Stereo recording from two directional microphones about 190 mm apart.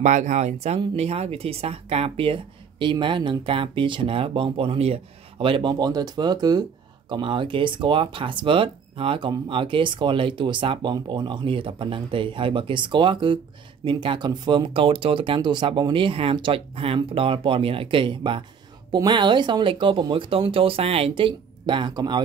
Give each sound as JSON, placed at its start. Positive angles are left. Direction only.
{"t": 0.0, "sound": "speech", "side_deg": -40}